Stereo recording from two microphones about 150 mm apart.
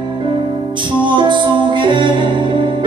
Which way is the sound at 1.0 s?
30° right (ahead or behind).